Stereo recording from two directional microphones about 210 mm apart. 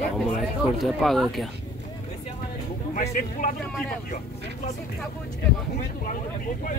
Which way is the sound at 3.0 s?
35° left (ahead or behind).